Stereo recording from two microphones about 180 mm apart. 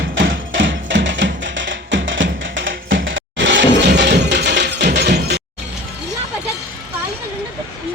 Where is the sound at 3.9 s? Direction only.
70° right (ahead or behind).